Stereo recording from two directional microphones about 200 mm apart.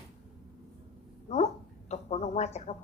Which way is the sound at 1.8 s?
35° left (ahead or behind).